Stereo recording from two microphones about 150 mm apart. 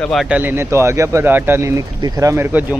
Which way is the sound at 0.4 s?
15° right (ahead or behind).